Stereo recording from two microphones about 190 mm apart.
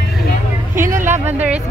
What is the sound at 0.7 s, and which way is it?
Speech, 10° right (ahead or behind).